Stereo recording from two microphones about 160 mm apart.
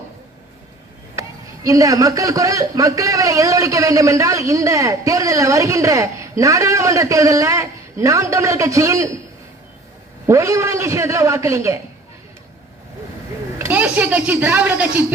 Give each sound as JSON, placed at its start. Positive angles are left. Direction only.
{"t": 1.6, "sound": "a man's voice", "side_deg": -20}
{"t": 10.2, "sound": "a man's voice", "side_deg": -20}
{"t": 13.6, "sound": "a woman's voice", "side_deg": -10}